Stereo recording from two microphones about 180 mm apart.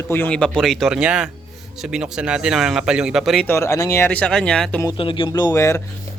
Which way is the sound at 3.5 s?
15° left (ahead or behind).